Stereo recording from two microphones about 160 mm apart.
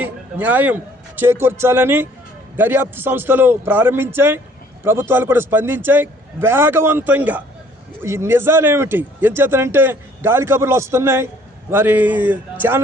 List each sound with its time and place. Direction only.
0.0 s a man's voice: 10° right (ahead or behind)